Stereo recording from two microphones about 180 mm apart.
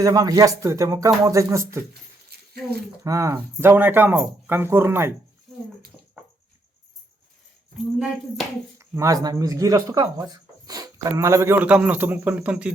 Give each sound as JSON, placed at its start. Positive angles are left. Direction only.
{"t": 0.0, "sound": "speech", "side_deg": -20}
{"t": 1.9, "sound": "a sound", "side_deg": -60}
{"t": 3.0, "sound": "speech", "side_deg": -20}
{"t": 7.9, "sound": "speech", "side_deg": 0}
{"t": 8.8, "sound": "speech", "side_deg": -15}